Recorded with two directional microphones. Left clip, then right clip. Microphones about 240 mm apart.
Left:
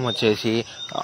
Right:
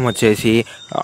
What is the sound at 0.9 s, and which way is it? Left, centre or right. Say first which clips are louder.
Speech: right 7 dB; right.